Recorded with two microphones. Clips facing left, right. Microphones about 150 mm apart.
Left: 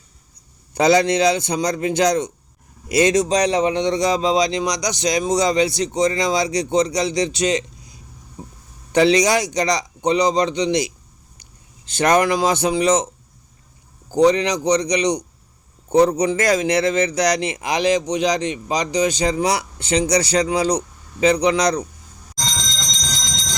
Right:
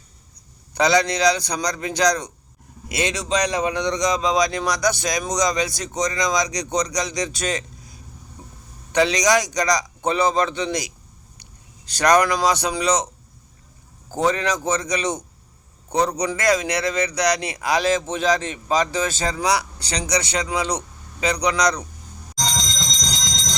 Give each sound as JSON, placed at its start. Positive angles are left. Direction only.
{"t": 0.7, "sound": "speech", "side_deg": 30}
{"t": 3.0, "sound": "speech", "side_deg": 40}
{"t": 9.0, "sound": "speech", "side_deg": 30}
{"t": 14.3, "sound": "speech", "side_deg": 20}